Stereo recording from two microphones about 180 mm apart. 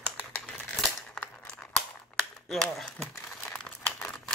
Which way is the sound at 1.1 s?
5° left (ahead or behind).